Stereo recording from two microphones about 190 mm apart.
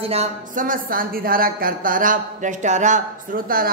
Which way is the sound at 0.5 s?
45° right (ahead or behind).